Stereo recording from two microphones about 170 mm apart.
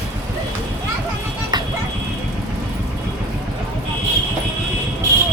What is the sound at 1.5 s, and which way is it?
Vehicle, 25° right (ahead or behind).